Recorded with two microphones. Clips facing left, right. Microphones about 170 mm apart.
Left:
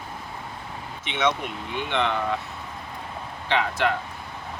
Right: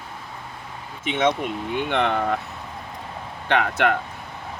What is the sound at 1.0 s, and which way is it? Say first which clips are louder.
Speech: right 4 dB; 45° right (ahead or behind).